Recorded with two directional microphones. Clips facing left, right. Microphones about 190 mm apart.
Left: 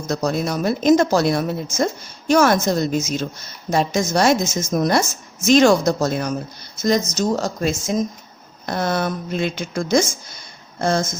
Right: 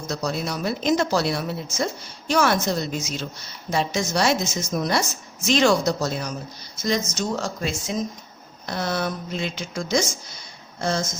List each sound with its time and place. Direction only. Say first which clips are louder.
0.1 s a woman's voice: left 6 dB; 50° left (ahead or behind)
6.8 s a woman's voice: left 6 dB; 40° left (ahead or behind)